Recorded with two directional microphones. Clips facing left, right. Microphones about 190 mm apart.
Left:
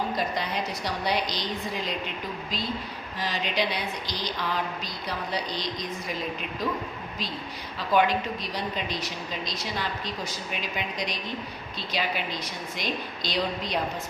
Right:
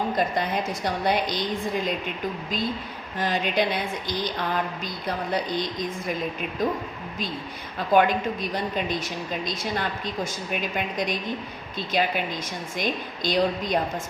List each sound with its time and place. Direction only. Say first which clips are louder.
0.2 s a woman's voice: right 4 dB; 50° right (ahead or behind)
3.2 s a woman's voice: right 5 dB; 50° right (ahead or behind)
7.8 s a woman's voice: right 3 dB; 50° right (ahead or behind)